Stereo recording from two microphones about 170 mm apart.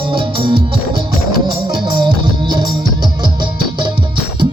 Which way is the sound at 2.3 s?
25° right (ahead or behind).